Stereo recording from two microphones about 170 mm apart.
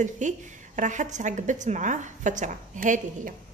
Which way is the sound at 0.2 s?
45° right (ahead or behind).